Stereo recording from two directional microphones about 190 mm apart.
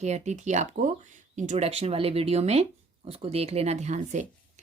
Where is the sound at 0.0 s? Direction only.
35° right (ahead or behind).